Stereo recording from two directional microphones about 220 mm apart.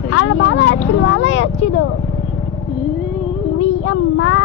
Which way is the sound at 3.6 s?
60° left (ahead or behind).